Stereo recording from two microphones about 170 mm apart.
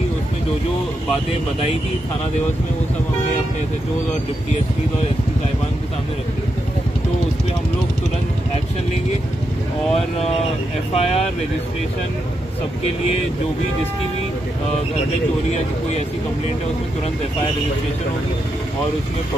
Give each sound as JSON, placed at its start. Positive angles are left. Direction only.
{"t": 9.9, "sound": "speech", "side_deg": 35}